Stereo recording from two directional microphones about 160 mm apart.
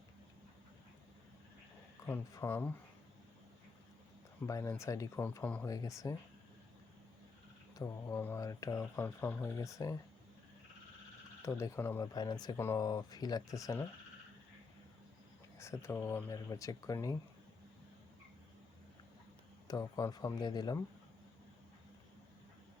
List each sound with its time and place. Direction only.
2.0 s speech: 15° left (ahead or behind)
4.4 s speech: 20° left (ahead or behind)
5.6 s speech: 20° left (ahead or behind)
7.8 s speech: 20° left (ahead or behind)
11.4 s speech: 20° left (ahead or behind)
15.5 s speech: 15° left (ahead or behind)
19.6 s speech: 25° left (ahead or behind)